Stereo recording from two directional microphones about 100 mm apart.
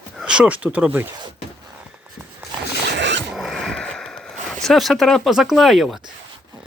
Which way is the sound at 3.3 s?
Centre (ahead or behind).